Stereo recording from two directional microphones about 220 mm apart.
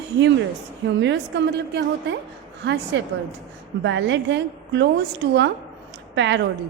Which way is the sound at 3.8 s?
55° right (ahead or behind).